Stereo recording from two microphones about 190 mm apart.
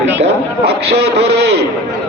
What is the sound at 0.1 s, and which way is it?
A man's voice, 65° right (ahead or behind).